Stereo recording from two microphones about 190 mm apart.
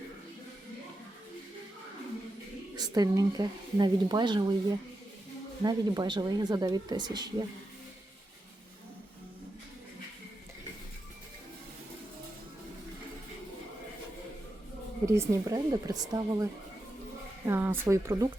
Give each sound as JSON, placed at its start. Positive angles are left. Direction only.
{"t": 2.7, "sound": "speech", "side_deg": -20}
{"t": 5.6, "sound": "speech", "side_deg": -20}
{"t": 15.0, "sound": "speech", "side_deg": -15}